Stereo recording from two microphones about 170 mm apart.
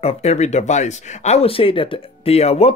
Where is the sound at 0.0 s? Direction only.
40° left (ahead or behind).